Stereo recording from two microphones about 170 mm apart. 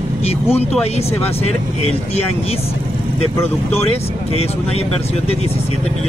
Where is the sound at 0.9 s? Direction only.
35° left (ahead or behind).